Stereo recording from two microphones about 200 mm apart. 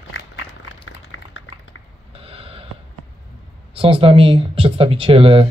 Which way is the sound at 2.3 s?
30° right (ahead or behind).